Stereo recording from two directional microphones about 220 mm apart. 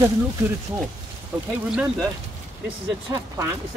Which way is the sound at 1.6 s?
5° right (ahead or behind).